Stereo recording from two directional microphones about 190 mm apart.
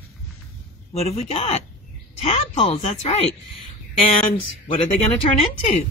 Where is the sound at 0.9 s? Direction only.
35° left (ahead or behind).